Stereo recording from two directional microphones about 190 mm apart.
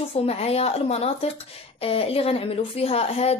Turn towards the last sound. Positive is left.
turn(degrees=35)  # may be behind; listen again after turning